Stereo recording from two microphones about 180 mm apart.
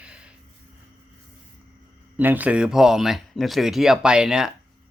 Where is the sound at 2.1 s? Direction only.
10° right (ahead or behind).